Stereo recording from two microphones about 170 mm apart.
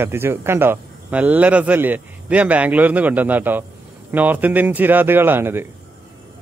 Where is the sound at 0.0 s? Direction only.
15° right (ahead or behind).